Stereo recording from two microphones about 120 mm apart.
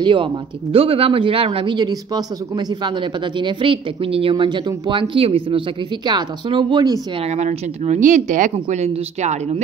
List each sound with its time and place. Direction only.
0.0 s a man's voice: 45° right (ahead or behind)
6.0 s speech: 40° right (ahead or behind)
7.2 s speech: 70° right (ahead or behind)